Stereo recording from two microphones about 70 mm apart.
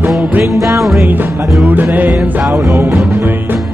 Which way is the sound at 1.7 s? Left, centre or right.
Right.